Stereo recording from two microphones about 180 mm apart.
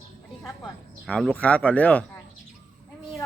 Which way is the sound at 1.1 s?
5° left (ahead or behind).